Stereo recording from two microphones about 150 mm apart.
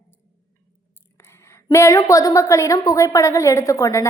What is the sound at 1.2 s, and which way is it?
A woman's voice, 15° left (ahead or behind).